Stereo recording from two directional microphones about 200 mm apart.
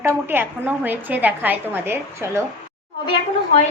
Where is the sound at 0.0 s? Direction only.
10° right (ahead or behind).